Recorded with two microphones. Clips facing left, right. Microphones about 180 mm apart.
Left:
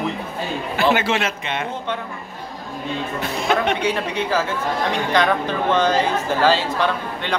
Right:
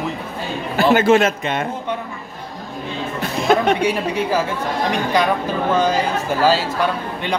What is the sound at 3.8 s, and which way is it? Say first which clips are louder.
Speech: right 3 dB; 10° right (ahead or behind).